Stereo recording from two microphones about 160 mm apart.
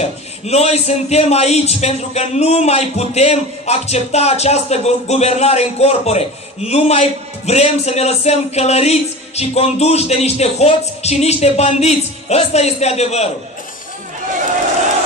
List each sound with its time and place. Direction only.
0.0 s a man's voice: 40° left (ahead or behind)